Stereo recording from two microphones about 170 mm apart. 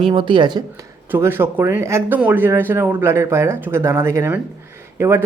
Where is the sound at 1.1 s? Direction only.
15° right (ahead or behind).